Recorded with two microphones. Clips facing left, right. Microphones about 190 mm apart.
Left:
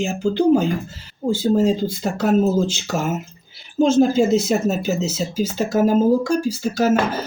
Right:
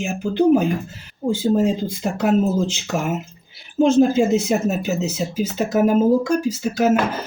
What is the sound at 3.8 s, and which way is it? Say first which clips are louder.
Speech: even; 15° right (ahead or behind).